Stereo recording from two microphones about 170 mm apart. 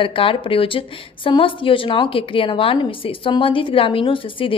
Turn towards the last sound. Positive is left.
turn(degrees=30)  # may be behind; listen again after turning